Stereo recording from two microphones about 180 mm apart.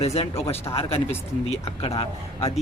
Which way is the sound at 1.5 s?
35° left (ahead or behind).